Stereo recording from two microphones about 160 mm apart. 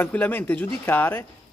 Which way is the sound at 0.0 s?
10° left (ahead or behind).